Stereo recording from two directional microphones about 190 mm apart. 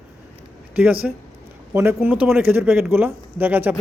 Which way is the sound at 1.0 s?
5° right (ahead or behind).